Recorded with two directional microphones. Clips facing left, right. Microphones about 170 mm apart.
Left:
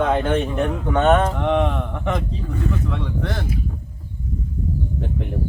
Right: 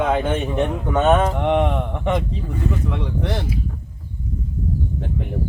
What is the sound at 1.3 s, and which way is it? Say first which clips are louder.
Speech: right 1 dB; 15° right (ahead or behind).